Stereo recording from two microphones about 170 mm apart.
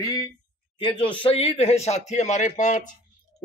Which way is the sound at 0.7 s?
30° left (ahead or behind).